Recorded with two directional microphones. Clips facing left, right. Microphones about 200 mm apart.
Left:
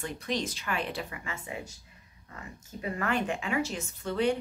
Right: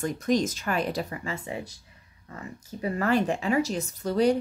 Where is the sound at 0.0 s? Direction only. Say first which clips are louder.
Right 8 dB; 45° right (ahead or behind).